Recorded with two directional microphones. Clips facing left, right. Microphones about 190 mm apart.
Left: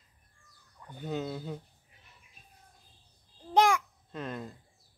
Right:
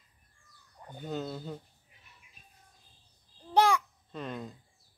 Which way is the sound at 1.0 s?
Centre (ahead or behind).